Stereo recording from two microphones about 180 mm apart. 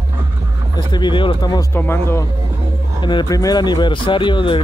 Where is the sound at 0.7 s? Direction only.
25° left (ahead or behind).